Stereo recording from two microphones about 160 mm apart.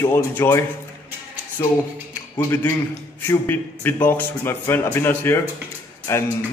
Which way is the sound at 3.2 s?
15° left (ahead or behind).